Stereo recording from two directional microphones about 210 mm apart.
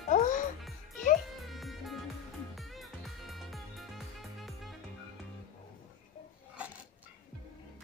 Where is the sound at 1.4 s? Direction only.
Centre (ahead or behind).